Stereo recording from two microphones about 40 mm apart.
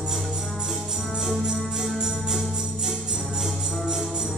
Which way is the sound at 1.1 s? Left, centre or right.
Centre.